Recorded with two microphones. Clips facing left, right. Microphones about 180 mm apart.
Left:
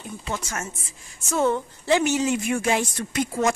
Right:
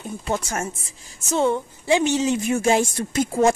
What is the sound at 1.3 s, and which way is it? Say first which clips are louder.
A woman's voice: right 2 dB; 15° right (ahead or behind).